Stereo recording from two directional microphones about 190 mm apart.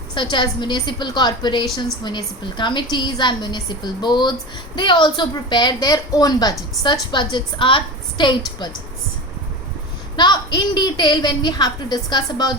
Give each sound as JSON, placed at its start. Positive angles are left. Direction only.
{"t": 0.1, "sound": "a woman's voice", "side_deg": 25}
{"t": 10.2, "sound": "a woman's voice", "side_deg": 25}